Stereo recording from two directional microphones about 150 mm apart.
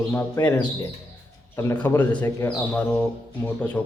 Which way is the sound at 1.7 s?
10° left (ahead or behind).